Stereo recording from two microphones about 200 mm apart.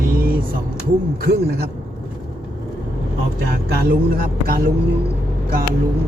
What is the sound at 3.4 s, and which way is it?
Speech, 50° right (ahead or behind).